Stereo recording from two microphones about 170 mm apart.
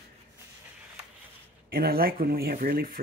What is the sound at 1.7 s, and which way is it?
Speech, 60° right (ahead or behind).